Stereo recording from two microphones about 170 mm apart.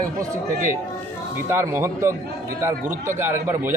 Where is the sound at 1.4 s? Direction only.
15° right (ahead or behind).